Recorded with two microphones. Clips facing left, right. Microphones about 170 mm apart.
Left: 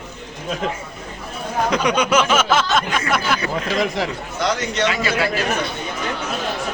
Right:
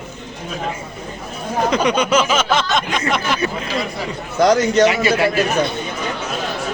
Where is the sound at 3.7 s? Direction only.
90° left.